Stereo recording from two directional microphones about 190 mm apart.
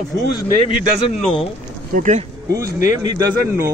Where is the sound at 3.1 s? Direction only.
20° right (ahead or behind).